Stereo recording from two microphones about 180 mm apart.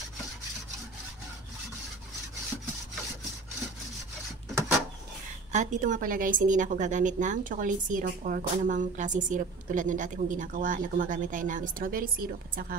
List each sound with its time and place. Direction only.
5.5 s a woman's voice: 40° right (ahead or behind)